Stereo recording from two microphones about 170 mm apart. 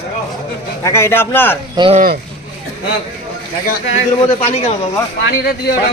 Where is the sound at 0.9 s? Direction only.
15° left (ahead or behind).